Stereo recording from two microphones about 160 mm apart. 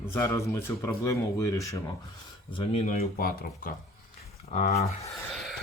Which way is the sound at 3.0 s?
65° left (ahead or behind).